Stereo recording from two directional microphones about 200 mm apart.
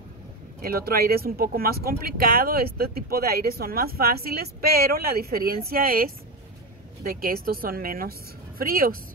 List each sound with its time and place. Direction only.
0.6 s speech: 50° right (ahead or behind)